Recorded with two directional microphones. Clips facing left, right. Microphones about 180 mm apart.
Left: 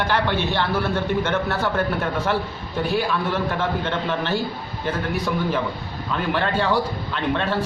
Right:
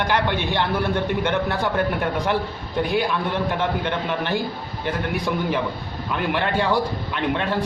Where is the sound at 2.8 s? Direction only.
15° right (ahead or behind).